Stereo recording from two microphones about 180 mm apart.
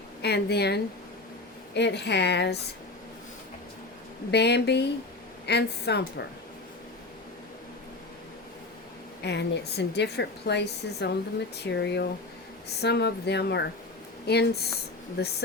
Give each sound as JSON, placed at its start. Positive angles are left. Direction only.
{"t": 0.2, "sound": "a woman's voice", "side_deg": 65}
{"t": 4.3, "sound": "a woman's voice", "side_deg": 70}
{"t": 9.2, "sound": "a woman's voice", "side_deg": 70}